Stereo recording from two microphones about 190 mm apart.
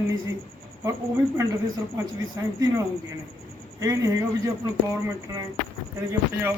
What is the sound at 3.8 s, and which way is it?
Speech, 15° right (ahead or behind).